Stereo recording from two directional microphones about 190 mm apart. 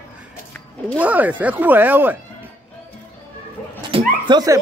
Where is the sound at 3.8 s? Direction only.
25° right (ahead or behind).